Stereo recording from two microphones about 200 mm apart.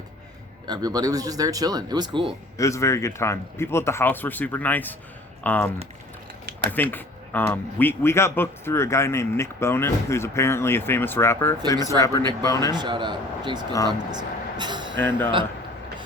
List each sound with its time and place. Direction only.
0.7 s speech: 20° right (ahead or behind)
2.6 s speech: 15° left (ahead or behind)
6.9 s speech: 10° left (ahead or behind)
12.7 s speech: 20° right (ahead or behind)
14.9 s speech: 10° left (ahead or behind)